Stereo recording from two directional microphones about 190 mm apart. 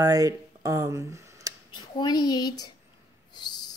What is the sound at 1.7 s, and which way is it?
A woman's voice, 20° left (ahead or behind).